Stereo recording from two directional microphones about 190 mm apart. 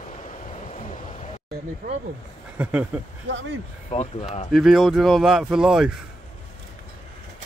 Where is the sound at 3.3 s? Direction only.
80° right.